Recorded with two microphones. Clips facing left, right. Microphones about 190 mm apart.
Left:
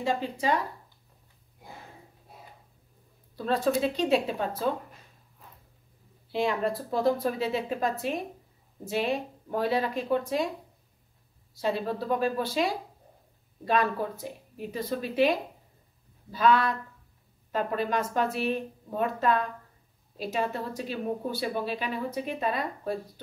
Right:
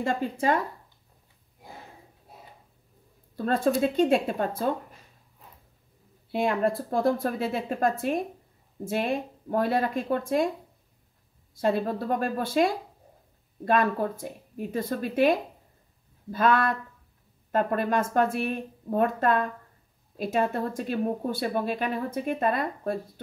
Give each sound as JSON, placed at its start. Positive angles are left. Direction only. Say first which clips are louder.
{"t": 0.0, "sound": "speech", "louder": "right 2 dB", "side_deg": -50}
{"t": 3.3, "sound": "speech", "louder": "right 2 dB", "side_deg": -50}
{"t": 6.3, "sound": "speech", "louder": "right 2 dB", "side_deg": -50}
{"t": 11.5, "sound": "speech", "louder": "right 3 dB", "side_deg": -50}